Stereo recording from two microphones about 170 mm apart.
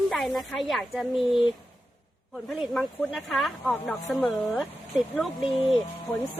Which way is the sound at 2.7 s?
Centre (ahead or behind).